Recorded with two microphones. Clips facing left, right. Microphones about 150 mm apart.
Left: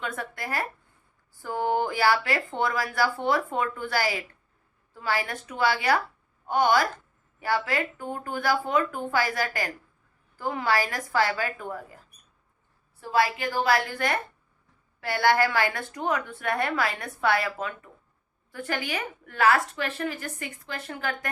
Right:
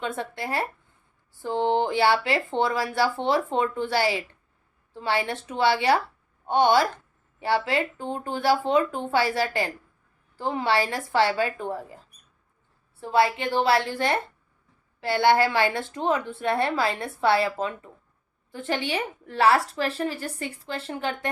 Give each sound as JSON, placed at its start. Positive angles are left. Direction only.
{"t": 0.0, "sound": "speech", "side_deg": -25}
{"t": 13.0, "sound": "a woman's voice", "side_deg": -30}